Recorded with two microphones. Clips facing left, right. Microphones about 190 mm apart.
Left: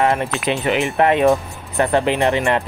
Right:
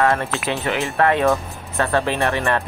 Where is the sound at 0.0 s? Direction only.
20° left (ahead or behind).